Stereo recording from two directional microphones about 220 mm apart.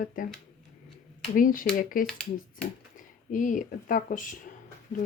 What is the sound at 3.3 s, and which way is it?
Speech, 35° left (ahead or behind).